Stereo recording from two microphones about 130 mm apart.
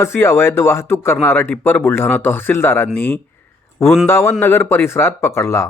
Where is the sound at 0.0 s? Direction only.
20° left (ahead or behind).